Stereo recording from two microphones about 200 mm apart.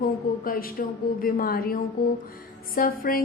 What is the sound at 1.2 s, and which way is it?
A woman's voice, 45° left (ahead or behind).